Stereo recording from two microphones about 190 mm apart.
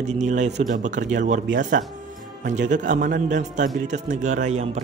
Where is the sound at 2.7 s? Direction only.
45° right (ahead or behind).